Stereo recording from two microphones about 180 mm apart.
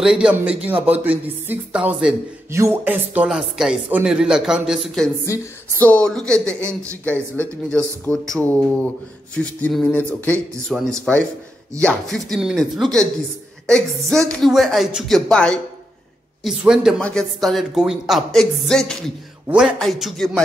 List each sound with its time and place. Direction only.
0.0 s a man's voice: 5° right (ahead or behind)
5.2 s speech: 15° left (ahead or behind)
6.6 s a man's voice: 15° right (ahead or behind)
7.1 s speech: 10° left (ahead or behind)